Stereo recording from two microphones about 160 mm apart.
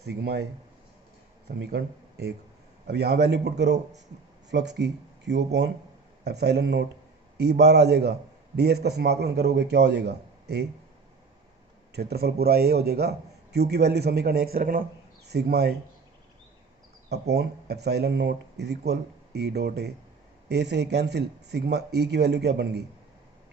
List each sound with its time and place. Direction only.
0.0 s a man's voice: 85° right
1.7 s speech: 90° right
11.9 s a man's voice: 85° right; by 14.8 s 60° right (ahead or behind)
15.3 s speech: 90° right
17.1 s speech: 90° right